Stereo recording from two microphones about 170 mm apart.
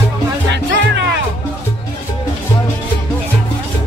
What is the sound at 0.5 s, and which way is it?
Music, 90° right.